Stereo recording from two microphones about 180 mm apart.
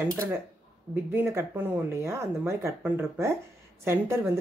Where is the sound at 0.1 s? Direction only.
15° right (ahead or behind).